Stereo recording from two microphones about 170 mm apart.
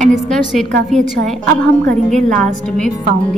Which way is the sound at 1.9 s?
45° right (ahead or behind).